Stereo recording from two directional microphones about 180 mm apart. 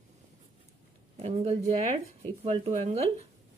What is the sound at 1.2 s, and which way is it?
Speech, 35° right (ahead or behind).